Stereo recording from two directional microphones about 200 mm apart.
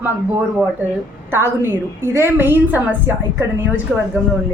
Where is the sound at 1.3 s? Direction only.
10° right (ahead or behind).